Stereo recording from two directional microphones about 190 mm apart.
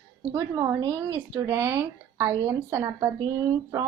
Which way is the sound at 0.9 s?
10° right (ahead or behind).